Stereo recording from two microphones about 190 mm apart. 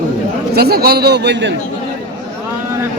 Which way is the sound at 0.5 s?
55° right (ahead or behind).